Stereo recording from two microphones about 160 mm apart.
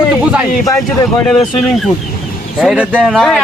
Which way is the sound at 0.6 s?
20° left (ahead or behind).